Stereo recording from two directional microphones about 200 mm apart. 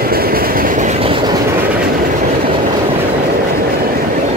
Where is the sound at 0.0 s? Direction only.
50° right (ahead or behind); by 1.2 s 30° right (ahead or behind).